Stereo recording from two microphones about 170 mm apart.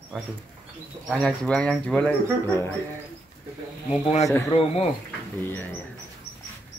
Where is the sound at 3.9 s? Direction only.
40° left (ahead or behind).